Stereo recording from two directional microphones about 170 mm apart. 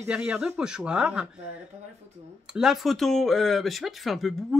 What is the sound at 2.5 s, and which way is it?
Speech, 5° right (ahead or behind).